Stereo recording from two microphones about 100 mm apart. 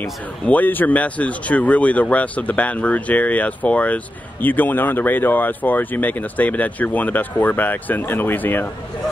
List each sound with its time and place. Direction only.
0.5 s speech: 15° left (ahead or behind)